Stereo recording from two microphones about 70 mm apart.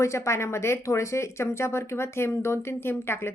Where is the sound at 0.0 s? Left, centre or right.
Left.